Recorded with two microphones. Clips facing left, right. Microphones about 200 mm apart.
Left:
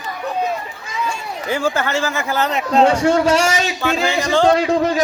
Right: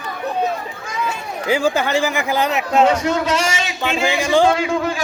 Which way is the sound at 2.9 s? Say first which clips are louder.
Left 4 dB; 30° left (ahead or behind).